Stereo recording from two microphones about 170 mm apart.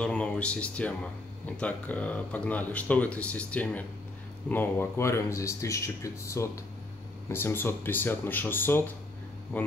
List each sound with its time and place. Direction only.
0.0 s speech: 5° left (ahead or behind)